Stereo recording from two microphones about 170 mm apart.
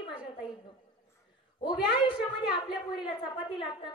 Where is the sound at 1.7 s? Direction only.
25° left (ahead or behind).